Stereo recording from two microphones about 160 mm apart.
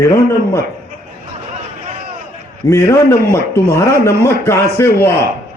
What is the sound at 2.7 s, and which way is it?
A man's voice, 20° left (ahead or behind).